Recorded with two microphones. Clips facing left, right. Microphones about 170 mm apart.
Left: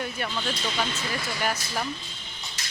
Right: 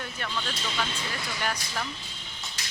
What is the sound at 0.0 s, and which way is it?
Speech, 15° left (ahead or behind).